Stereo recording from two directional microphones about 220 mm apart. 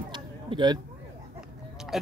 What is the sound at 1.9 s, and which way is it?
Music, centre (ahead or behind).